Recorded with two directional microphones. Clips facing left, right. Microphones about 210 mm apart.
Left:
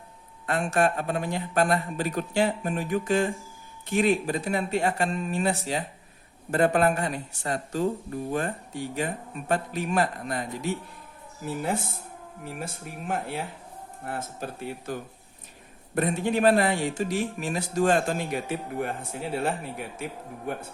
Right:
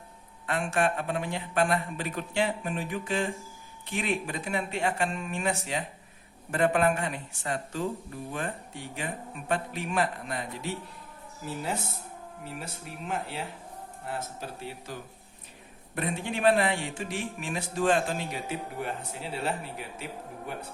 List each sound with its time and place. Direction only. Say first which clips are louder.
0.4 s a man's voice: left 3 dB; 40° left (ahead or behind)
12.5 s speech: left 4 dB; 50° left (ahead or behind)
16.0 s a man's voice: left 7 dB; 40° left (ahead or behind)